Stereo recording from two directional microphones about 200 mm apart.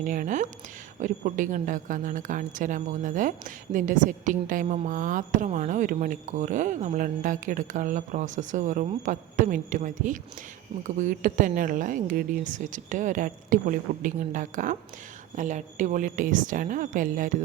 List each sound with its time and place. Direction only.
0.0 s a woman's voice: 40° right (ahead or behind)